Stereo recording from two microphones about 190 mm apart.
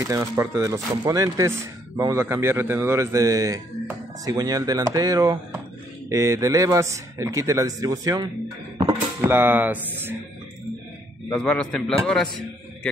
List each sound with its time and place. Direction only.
0.0 s a man's voice: 15° right (ahead or behind)
11.2 s a man's voice: 5° left (ahead or behind)